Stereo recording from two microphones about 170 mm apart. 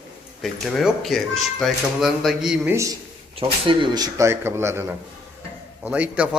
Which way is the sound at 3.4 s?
30° right (ahead or behind).